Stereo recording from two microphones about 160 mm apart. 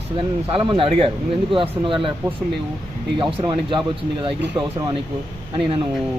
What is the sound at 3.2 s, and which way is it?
Speech, 30° right (ahead or behind).